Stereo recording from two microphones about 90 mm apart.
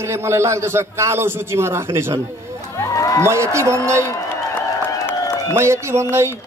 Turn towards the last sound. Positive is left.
turn(degrees=-30)  # may be behind; listen again after turning